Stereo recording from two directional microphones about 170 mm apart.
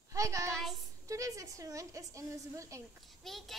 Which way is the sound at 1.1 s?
20° right (ahead or behind).